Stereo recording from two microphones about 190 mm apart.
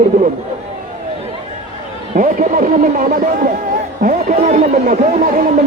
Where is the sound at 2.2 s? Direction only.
45° right (ahead or behind).